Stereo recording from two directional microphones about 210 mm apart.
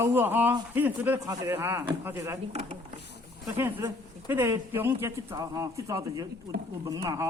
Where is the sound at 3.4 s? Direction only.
15° right (ahead or behind).